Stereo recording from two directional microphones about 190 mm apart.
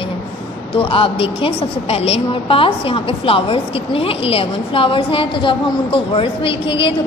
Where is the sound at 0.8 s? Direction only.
30° left (ahead or behind).